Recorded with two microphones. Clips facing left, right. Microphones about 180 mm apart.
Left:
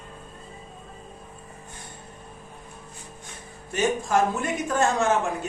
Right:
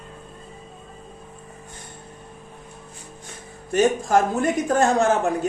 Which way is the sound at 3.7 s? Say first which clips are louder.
Right 5 dB; 40° right (ahead or behind).